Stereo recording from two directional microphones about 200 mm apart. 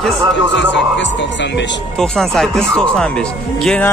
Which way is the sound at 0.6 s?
65° left (ahead or behind).